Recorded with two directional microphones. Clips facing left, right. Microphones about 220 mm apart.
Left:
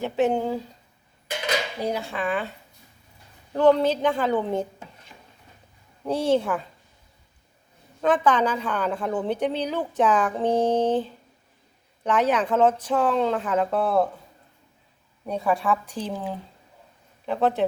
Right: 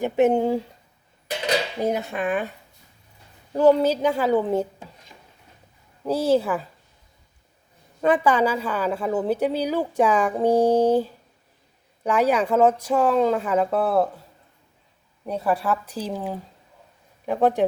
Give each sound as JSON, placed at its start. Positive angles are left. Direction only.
{"t": 0.0, "sound": "speech", "side_deg": -20}
{"t": 1.4, "sound": "dishes", "side_deg": -30}
{"t": 1.9, "sound": "speech", "side_deg": -20}
{"t": 3.5, "sound": "a woman's voice", "side_deg": -10}
{"t": 8.0, "sound": "a woman's voice", "side_deg": -10}
{"t": 15.2, "sound": "a woman's voice", "side_deg": -5}